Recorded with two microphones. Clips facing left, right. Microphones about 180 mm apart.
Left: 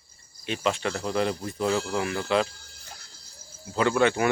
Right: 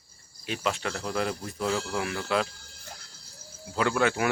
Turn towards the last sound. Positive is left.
turn(degrees=0)  # may be behind; listen again after turning